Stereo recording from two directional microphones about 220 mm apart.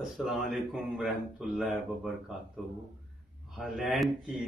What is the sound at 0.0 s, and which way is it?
Speech, centre (ahead or behind).